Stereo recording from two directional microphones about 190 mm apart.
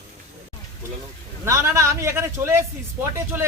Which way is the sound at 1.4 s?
15° right (ahead or behind).